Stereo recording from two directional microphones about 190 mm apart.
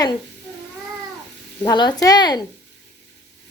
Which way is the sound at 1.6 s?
20° left (ahead or behind).